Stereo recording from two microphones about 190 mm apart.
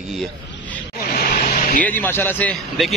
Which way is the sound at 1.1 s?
50° left (ahead or behind).